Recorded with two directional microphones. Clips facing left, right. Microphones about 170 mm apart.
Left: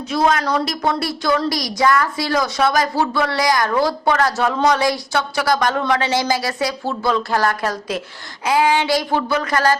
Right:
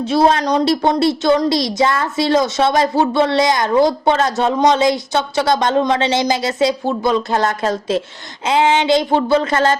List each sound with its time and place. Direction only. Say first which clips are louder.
0.0 s speech: right 4 dB; 30° right (ahead or behind)